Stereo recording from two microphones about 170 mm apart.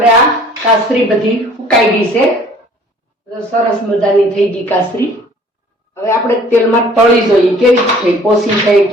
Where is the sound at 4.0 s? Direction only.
5° left (ahead or behind).